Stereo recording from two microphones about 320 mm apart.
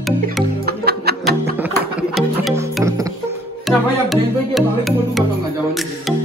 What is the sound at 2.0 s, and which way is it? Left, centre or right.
Music, centre.